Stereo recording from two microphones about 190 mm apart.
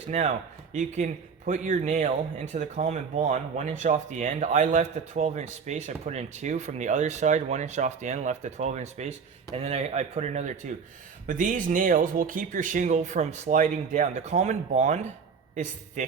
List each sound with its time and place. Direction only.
0.7 s speech: 35° right (ahead or behind)